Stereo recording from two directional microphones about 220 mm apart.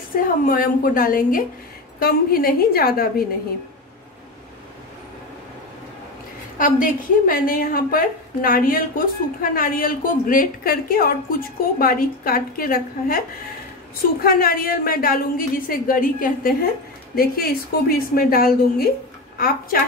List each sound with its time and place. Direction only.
0.1 s a woman's voice: 40° left (ahead or behind)
6.6 s a woman's voice: 40° left (ahead or behind)
14.2 s a woman's voice: 40° left (ahead or behind)